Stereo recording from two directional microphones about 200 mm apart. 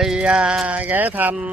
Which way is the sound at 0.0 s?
5° right (ahead or behind).